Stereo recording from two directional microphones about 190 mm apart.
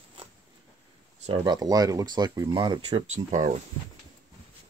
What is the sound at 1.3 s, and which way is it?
Speech, 20° right (ahead or behind).